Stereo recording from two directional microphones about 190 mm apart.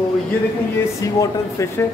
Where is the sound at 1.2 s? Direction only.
15° left (ahead or behind).